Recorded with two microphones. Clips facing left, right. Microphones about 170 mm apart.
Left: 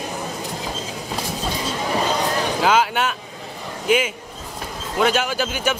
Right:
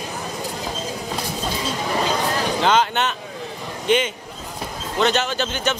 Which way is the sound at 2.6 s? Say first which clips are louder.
Even; 5° left (ahead or behind).